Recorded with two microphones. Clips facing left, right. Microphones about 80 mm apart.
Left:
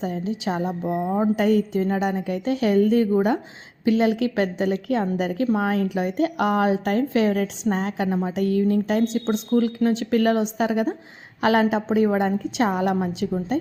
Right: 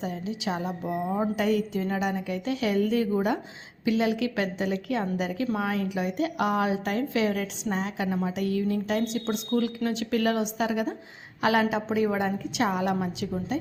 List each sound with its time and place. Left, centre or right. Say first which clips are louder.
0.0 s a woman's voice: left 5 dB; left
1.4 s a woman's voice: left 6 dB; left